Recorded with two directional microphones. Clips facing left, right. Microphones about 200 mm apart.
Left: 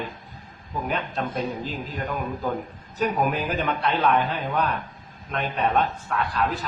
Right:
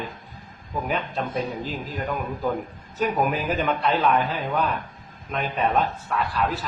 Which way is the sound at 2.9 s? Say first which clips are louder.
Even; centre (ahead or behind).